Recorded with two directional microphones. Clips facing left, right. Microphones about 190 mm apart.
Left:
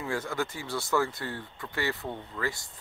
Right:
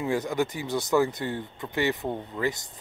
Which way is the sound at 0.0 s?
20° right (ahead or behind).